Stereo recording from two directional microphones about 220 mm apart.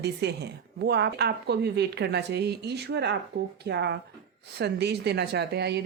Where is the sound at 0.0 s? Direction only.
50° right (ahead or behind).